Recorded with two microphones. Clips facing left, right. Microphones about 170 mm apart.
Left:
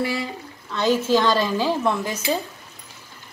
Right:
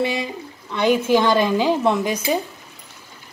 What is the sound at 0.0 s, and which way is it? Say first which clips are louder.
A woman's voice: right 3 dB; 20° right (ahead or behind).